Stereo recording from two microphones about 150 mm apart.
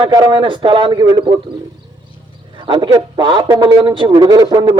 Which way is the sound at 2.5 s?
30° right (ahead or behind).